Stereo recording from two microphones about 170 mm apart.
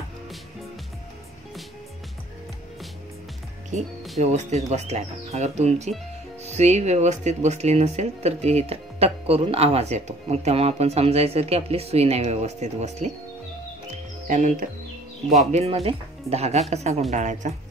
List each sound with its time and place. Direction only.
4.2 s speech: 40° right (ahead or behind)
14.2 s speech: 50° right (ahead or behind)
15.5 s speech: 35° right (ahead or behind)